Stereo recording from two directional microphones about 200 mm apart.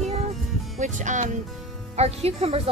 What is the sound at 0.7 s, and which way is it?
Speech, 40° right (ahead or behind).